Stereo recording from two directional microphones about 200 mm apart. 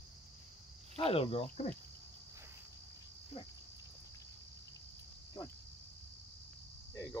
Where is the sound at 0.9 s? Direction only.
30° left (ahead or behind).